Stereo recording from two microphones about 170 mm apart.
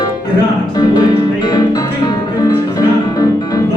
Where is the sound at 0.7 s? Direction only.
25° left (ahead or behind).